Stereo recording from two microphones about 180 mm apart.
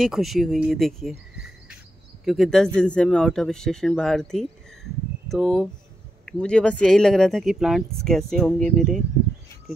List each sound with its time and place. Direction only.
0.0 s speech: centre (ahead or behind)